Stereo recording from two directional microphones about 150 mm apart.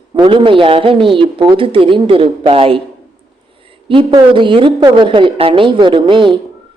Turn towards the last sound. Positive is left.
turn(degrees=-35)  # may be behind; listen again after turning